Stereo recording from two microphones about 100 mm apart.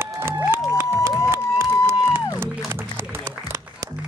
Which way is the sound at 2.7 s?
25° right (ahead or behind).